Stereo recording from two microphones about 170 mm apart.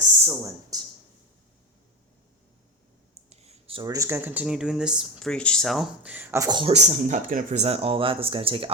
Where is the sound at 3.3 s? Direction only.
40° right (ahead or behind).